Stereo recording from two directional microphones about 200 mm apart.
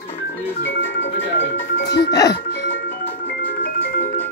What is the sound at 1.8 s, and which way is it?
Music, 55° left (ahead or behind).